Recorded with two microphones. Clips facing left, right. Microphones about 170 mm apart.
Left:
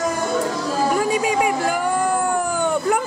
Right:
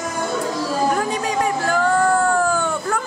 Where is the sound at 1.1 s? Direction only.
10° left (ahead or behind).